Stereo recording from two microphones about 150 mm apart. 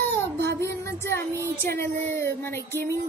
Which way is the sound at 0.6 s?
20° left (ahead or behind).